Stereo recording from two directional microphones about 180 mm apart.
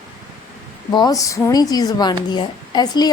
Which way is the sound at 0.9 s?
20° left (ahead or behind).